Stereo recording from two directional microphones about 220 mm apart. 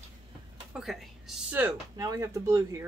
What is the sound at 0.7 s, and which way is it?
Speech, centre (ahead or behind).